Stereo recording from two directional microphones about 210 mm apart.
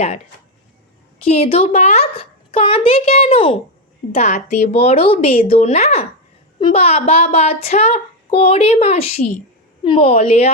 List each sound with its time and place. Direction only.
1.2 s speech: 25° left (ahead or behind)